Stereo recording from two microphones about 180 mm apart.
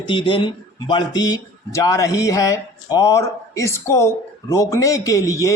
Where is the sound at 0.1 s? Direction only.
25° left (ahead or behind).